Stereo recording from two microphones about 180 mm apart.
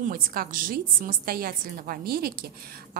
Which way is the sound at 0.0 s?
55° right (ahead or behind).